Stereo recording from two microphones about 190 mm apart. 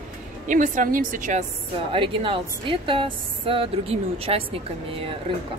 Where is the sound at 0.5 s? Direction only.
45° right (ahead or behind).